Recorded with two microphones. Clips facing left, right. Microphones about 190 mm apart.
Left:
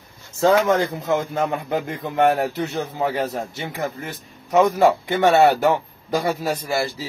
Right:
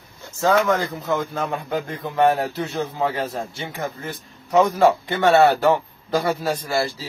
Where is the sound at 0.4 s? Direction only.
25° left (ahead or behind).